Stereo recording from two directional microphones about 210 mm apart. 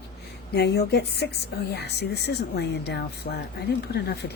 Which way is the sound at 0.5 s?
50° left (ahead or behind).